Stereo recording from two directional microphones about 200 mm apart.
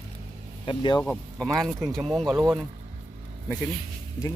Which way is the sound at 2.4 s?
15° right (ahead or behind).